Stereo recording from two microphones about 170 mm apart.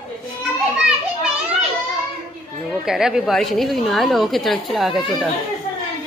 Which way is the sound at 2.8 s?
5° right (ahead or behind).